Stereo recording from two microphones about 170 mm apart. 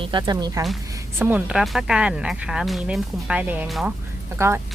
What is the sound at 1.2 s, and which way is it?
Speech, 10° right (ahead or behind).